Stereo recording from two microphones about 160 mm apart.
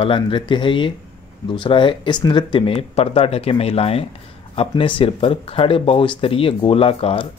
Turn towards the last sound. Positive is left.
turn(degrees=35)  # may be behind; listen again after turning